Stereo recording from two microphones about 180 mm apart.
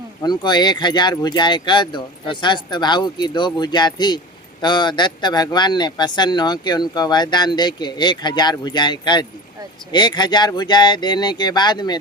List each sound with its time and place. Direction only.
0.2 s speech: 25° left (ahead or behind)